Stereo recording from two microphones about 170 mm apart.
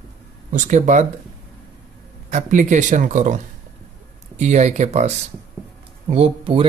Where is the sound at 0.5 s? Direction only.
50° right (ahead or behind).